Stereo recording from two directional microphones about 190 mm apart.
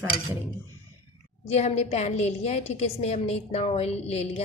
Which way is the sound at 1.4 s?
35° left (ahead or behind).